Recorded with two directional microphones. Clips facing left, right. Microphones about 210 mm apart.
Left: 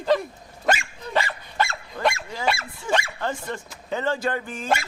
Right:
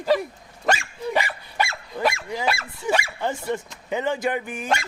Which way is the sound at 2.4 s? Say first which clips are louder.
Even; centre (ahead or behind).